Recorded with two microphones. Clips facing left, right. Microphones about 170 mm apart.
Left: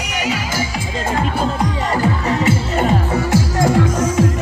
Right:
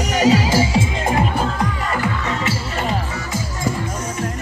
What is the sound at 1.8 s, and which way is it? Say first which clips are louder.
Music: left 4 dB; 30° left (ahead or behind).